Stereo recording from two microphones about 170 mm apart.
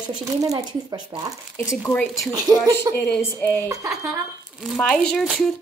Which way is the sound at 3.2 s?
15° left (ahead or behind).